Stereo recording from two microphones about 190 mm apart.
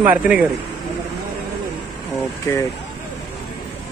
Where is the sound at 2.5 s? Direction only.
15° left (ahead or behind).